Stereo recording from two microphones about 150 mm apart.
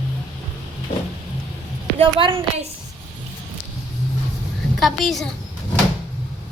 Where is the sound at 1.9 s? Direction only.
40° right (ahead or behind).